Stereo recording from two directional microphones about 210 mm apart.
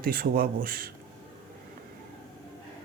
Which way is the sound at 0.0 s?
45° right (ahead or behind).